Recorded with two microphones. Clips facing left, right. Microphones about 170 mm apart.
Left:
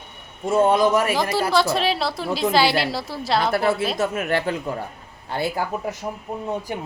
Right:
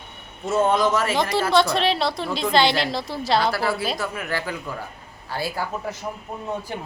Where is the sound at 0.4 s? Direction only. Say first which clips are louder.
Left 3 dB; 10° left (ahead or behind).